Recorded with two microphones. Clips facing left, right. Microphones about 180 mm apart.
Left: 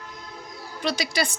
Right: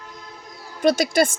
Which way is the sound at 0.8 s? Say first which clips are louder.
Right 9 dB; 50° right (ahead or behind).